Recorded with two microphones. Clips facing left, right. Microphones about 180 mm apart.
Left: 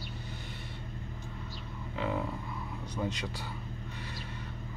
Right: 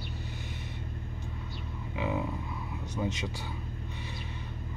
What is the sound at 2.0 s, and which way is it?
Speech, 5° right (ahead or behind).